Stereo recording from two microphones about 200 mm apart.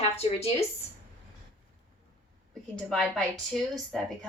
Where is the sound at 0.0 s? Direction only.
30° left (ahead or behind).